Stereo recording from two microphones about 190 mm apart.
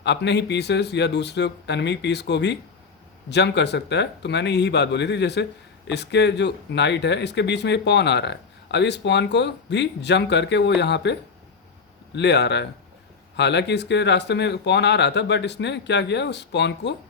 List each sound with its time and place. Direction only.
0.0 s speech: 65° left (ahead or behind)